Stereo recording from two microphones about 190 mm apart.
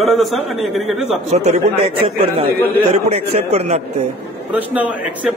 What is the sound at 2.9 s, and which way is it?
Speech, 35° right (ahead or behind).